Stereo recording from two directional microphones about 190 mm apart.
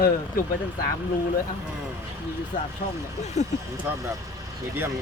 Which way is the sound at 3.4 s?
35° left (ahead or behind).